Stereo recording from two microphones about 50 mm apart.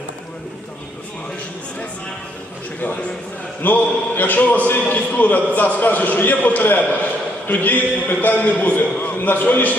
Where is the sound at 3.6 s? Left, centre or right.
Left.